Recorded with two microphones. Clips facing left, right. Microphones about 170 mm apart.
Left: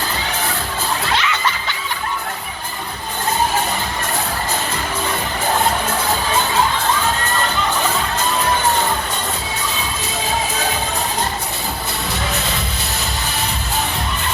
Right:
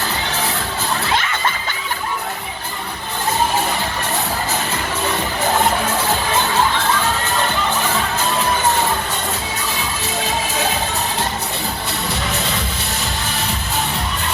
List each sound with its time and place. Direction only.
1.2 s music: 50° right (ahead or behind)